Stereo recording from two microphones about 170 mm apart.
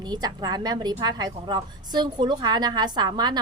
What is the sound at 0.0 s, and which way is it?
A woman's voice, 25° right (ahead or behind).